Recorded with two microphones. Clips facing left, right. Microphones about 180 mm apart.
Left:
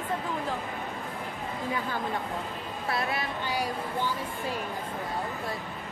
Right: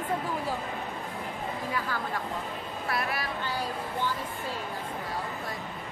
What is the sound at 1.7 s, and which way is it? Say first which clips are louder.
Speech: left 2 dB; 20° left (ahead or behind).